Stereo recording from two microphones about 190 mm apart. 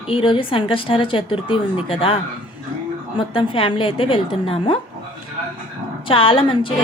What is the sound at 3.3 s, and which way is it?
A woman's voice, 25° left (ahead or behind).